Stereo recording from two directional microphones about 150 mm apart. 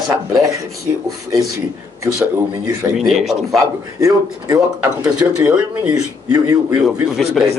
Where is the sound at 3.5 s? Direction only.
20° right (ahead or behind).